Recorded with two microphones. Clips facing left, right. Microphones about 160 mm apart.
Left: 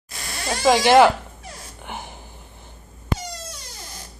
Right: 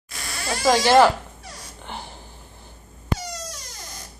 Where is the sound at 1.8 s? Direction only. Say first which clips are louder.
Left 1 dB; 15° left (ahead or behind).